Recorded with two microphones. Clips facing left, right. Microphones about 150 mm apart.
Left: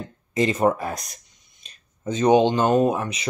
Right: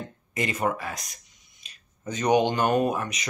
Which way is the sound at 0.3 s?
25° left (ahead or behind).